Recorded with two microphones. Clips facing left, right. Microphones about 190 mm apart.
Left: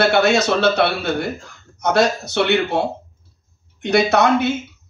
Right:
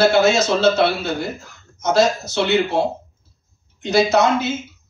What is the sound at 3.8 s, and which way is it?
Speech, 65° left (ahead or behind).